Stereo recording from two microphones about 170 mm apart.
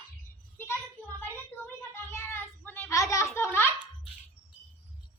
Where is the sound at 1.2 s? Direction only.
10° left (ahead or behind).